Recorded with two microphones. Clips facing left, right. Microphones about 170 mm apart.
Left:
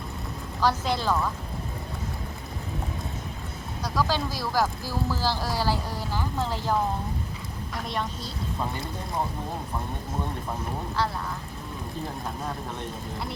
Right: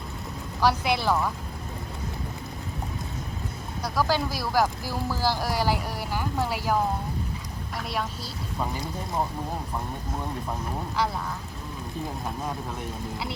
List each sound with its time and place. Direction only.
0.6 s speech: 10° right (ahead or behind)
3.8 s speech: 10° right (ahead or behind)